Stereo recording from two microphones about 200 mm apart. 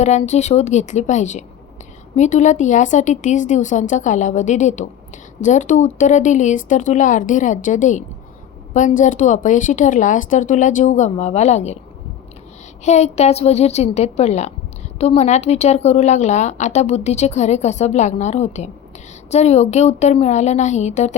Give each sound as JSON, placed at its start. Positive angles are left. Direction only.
{"t": 0.0, "sound": "a woman's voice", "side_deg": 35}
{"t": 12.8, "sound": "a woman's voice", "side_deg": 35}